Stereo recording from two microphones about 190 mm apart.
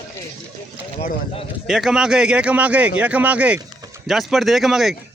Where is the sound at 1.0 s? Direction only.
30° left (ahead or behind).